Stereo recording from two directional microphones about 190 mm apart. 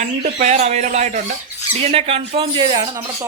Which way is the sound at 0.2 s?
45° right (ahead or behind).